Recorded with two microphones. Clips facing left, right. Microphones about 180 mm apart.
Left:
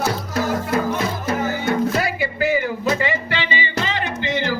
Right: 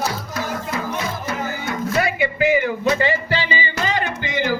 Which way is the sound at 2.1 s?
20° right (ahead or behind).